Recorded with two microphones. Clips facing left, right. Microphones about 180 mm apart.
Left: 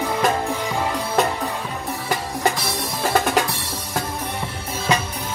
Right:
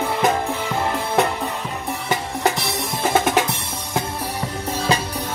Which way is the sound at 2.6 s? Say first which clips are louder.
Right 1 dB; 20° right (ahead or behind).